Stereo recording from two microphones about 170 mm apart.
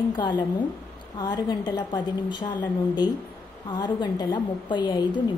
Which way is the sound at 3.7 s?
25° left (ahead or behind).